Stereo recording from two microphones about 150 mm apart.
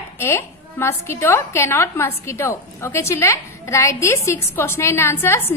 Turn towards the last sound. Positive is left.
turn(degrees=15)  # may be behind; listen again after turning